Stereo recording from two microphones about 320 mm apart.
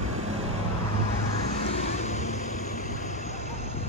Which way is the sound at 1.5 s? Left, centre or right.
Left.